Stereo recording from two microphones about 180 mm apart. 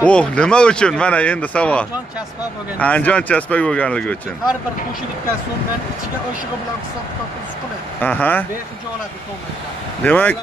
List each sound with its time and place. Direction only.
0.0 s speech: 5° left (ahead or behind)
8.0 s speech: 10° left (ahead or behind)
10.0 s speech: 10° left (ahead or behind)